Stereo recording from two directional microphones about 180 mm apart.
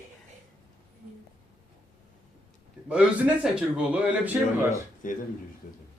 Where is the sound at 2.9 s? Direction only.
5° right (ahead or behind).